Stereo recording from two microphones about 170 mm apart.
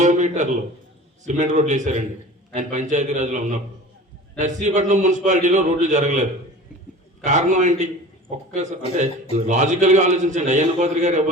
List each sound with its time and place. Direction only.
0.0 s a man's voice: 45° right (ahead or behind)
7.3 s a man's voice: 45° right (ahead or behind)
9.3 s a man's voice: 45° right (ahead or behind)